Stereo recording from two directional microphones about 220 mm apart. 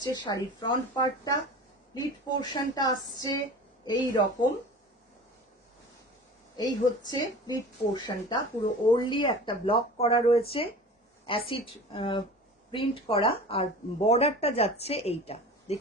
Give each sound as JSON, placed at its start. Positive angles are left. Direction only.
{"t": 0.0, "sound": "speech", "side_deg": 20}
{"t": 6.6, "sound": "speech", "side_deg": 20}